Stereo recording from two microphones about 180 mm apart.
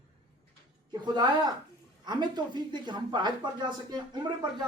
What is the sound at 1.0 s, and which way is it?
Speech, 25° right (ahead or behind).